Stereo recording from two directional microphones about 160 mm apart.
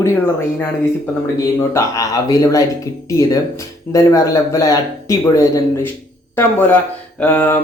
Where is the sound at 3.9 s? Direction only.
20° left (ahead or behind).